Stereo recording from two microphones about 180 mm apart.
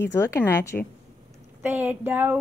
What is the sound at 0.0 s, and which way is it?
Speech, 15° left (ahead or behind).